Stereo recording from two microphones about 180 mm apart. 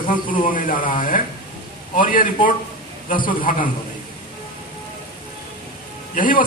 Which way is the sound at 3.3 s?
50° left (ahead or behind).